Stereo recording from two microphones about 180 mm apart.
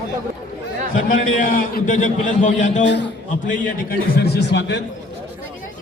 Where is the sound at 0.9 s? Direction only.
50° left (ahead or behind).